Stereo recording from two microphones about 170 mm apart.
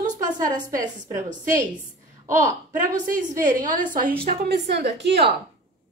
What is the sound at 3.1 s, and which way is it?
Speech, 50° right (ahead or behind).